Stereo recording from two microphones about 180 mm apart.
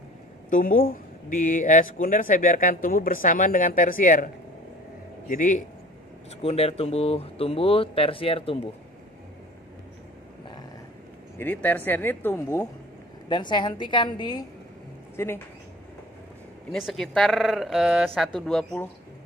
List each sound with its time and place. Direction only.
0.5 s speech: 50° left (ahead or behind)
5.3 s speech: 45° left (ahead or behind)
6.4 s speech: 35° left (ahead or behind)
11.3 s speech: 10° left (ahead or behind)
13.3 s a woman's voice: 25° left (ahead or behind)
15.1 s speech: 15° left (ahead or behind)
16.8 s speech: centre (ahead or behind)